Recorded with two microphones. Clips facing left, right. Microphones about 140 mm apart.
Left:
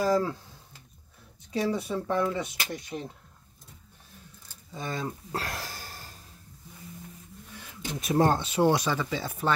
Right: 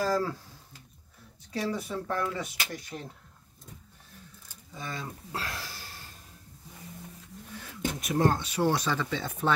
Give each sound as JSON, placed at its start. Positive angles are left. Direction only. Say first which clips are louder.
{"t": 0.0, "sound": "speech", "louder": "left 3 dB", "side_deg": 15}
{"t": 1.5, "sound": "speech", "louder": "left 4 dB", "side_deg": 20}
{"t": 4.7, "sound": "speech", "louder": "left 5 dB", "side_deg": 40}
{"t": 8.0, "sound": "speech", "louder": "left 3 dB", "side_deg": 30}